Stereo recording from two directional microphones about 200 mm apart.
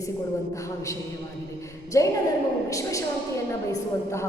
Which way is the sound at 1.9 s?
15° left (ahead or behind).